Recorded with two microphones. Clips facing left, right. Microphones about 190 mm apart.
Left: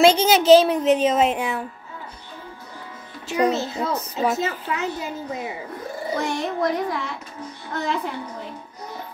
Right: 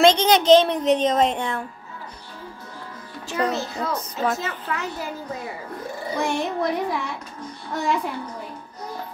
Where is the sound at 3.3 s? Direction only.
15° left (ahead or behind).